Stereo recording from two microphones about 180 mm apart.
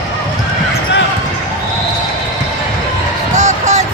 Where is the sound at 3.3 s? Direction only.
40° right (ahead or behind).